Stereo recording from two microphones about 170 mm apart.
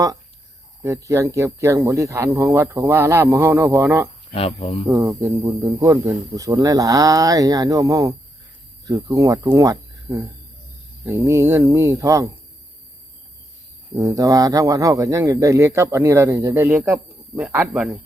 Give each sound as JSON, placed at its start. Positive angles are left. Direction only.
{"t": 0.8, "sound": "speech", "side_deg": -15}
{"t": 4.4, "sound": "speech", "side_deg": 35}
{"t": 4.9, "sound": "speech", "side_deg": -15}
{"t": 13.9, "sound": "speech", "side_deg": -20}